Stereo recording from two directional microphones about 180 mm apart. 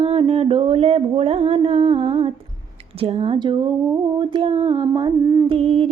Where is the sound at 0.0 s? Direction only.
30° right (ahead or behind).